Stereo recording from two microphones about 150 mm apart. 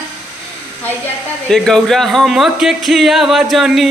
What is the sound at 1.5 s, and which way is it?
Speech, 5° left (ahead or behind).